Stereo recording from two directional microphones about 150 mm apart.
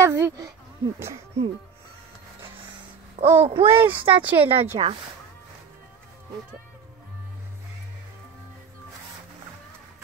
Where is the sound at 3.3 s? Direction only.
40° right (ahead or behind).